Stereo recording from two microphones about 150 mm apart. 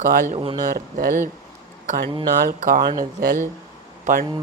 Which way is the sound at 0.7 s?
65° right (ahead or behind).